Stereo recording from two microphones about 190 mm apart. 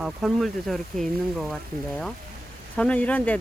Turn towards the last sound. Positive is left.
turn(degrees=10)  # may be behind; listen again after turning